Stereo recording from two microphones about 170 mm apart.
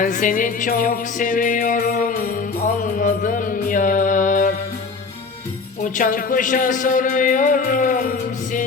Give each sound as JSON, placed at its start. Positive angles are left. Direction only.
{"t": 0.0, "sound": "a man's voice", "side_deg": 50}
{"t": 2.8, "sound": "music", "side_deg": 50}
{"t": 5.8, "sound": "a man's voice", "side_deg": 55}